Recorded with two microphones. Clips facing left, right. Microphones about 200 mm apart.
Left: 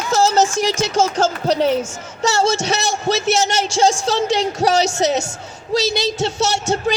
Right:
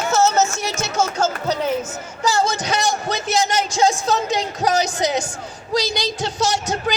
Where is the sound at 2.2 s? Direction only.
75° left (ahead or behind).